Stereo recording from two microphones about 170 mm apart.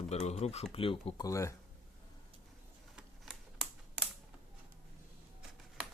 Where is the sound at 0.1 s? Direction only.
40° left (ahead or behind).